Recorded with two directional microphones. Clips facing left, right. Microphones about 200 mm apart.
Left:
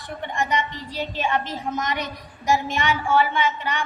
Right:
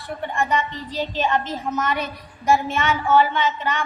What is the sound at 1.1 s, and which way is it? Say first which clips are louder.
A woman's voice: right 2 dB; 10° left (ahead or behind).